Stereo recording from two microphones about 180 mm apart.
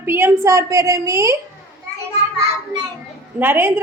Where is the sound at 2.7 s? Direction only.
15° right (ahead or behind).